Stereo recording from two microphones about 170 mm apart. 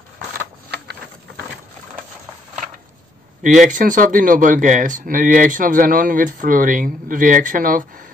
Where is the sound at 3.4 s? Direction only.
50° right (ahead or behind).